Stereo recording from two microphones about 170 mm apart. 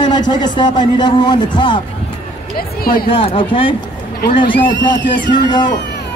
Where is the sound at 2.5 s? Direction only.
60° left (ahead or behind).